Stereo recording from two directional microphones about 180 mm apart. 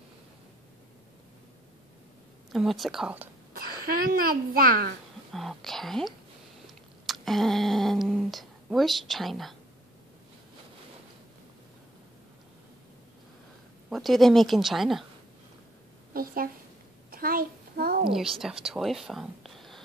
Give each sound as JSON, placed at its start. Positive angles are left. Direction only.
{"t": 2.5, "sound": "speech", "side_deg": 0}
{"t": 3.5, "sound": "speech", "side_deg": -55}
{"t": 5.3, "sound": "speech", "side_deg": 0}
{"t": 13.8, "sound": "speech", "side_deg": 0}
{"t": 16.1, "sound": "a woman's voice", "side_deg": -55}
{"t": 17.1, "sound": "a sound", "side_deg": -55}
{"t": 18.1, "sound": "a woman's voice", "side_deg": 0}